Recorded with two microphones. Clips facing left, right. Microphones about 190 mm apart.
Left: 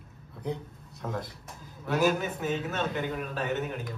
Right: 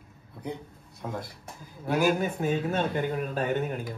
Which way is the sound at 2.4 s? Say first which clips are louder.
Right 4 dB; 50° right (ahead or behind).